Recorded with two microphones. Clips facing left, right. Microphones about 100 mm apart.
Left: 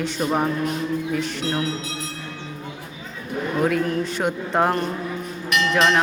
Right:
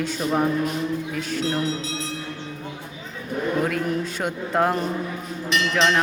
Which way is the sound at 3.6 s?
Centre (ahead or behind).